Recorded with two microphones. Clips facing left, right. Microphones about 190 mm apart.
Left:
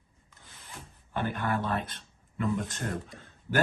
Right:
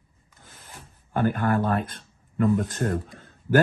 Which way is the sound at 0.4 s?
50° right (ahead or behind).